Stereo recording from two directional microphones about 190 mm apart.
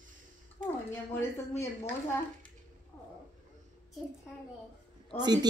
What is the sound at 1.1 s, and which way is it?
Speech, 15° left (ahead or behind).